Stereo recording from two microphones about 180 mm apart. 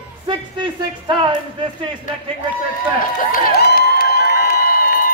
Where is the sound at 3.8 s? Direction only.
55° left (ahead or behind).